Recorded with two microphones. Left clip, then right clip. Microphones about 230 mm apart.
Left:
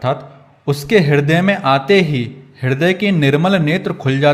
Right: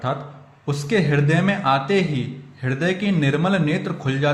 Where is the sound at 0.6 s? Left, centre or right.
Left.